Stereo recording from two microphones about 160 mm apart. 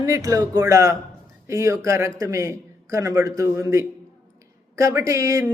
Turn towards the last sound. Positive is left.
turn(degrees=-20)  # may be behind; listen again after turning